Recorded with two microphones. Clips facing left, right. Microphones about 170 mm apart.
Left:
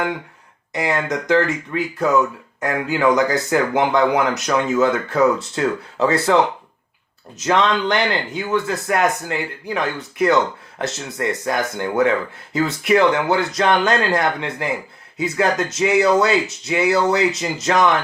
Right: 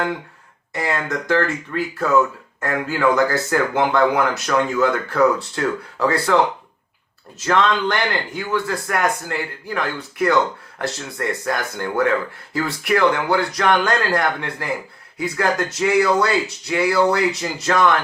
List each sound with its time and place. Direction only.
0.7 s speech: 20° left (ahead or behind)